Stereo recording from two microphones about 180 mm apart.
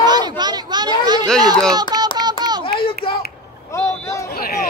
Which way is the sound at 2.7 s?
30° left (ahead or behind).